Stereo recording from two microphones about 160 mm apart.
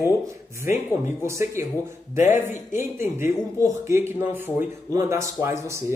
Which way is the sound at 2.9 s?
15° right (ahead or behind).